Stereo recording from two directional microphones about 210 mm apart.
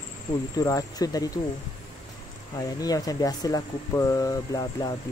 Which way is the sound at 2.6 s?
15° left (ahead or behind).